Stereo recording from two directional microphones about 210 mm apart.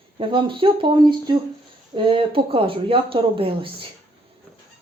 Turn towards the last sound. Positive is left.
turn(degrees=-25)  # may be behind; listen again after turning